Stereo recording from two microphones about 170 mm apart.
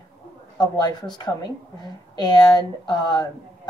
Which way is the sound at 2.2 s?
25° left (ahead or behind).